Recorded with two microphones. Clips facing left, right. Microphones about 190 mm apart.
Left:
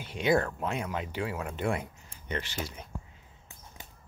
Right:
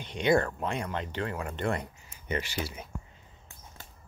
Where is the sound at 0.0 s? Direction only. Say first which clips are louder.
Right 1 dB; 5° left (ahead or behind).